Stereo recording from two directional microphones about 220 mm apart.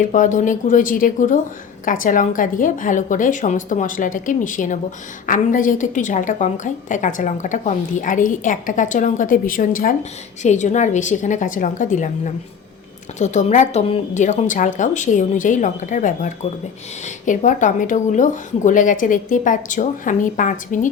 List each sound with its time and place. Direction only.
0.0 s a woman's voice: 35° left (ahead or behind)